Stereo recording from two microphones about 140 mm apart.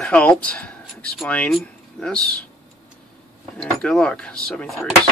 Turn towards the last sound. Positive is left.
turn(degrees=5)  # may be behind; listen again after turning